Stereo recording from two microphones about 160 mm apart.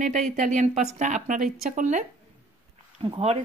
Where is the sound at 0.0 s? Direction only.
50° right (ahead or behind).